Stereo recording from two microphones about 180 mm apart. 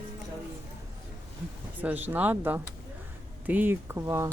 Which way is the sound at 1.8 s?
10° right (ahead or behind).